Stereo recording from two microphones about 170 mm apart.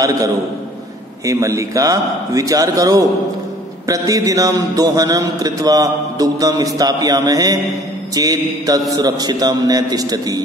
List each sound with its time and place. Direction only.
1.2 s a man's voice: 20° right (ahead or behind)